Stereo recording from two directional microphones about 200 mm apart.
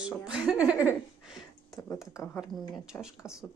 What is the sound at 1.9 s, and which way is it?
Speech, 15° left (ahead or behind).